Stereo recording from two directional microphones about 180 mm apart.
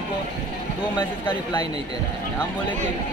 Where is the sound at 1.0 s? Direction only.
25° left (ahead or behind).